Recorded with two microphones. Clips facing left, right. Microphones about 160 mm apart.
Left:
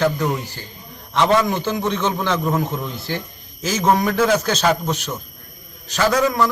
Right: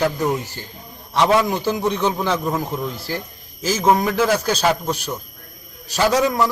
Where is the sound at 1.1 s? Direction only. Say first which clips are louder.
Even; 15° right (ahead or behind).